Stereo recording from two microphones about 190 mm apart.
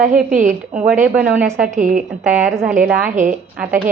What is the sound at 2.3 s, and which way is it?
Speech, 5° right (ahead or behind).